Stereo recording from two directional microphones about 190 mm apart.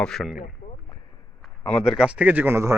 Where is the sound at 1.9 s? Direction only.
5° right (ahead or behind).